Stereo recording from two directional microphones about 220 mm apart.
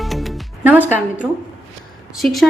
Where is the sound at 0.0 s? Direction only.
Centre (ahead or behind).